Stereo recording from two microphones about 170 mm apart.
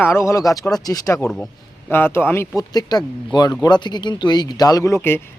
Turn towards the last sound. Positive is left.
turn(degrees=15)  # may be behind; listen again after turning